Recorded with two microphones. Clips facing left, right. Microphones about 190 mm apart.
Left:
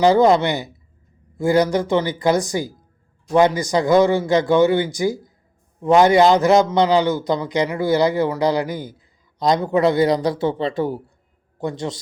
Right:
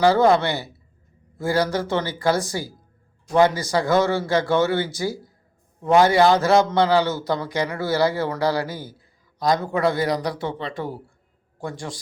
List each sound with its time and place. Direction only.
0.0 s a man's voice: 15° left (ahead or behind)